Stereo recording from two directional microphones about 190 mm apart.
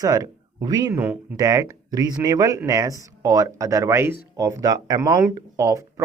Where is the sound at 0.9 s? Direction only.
10° right (ahead or behind).